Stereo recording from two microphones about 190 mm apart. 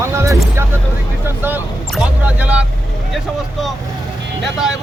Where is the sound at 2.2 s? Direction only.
5° right (ahead or behind).